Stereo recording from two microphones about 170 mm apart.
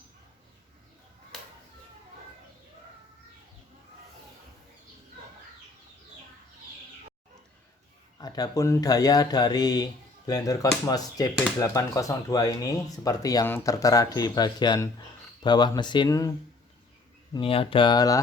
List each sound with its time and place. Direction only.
8.2 s speech: 20° left (ahead or behind)
17.3 s speech: 35° left (ahead or behind)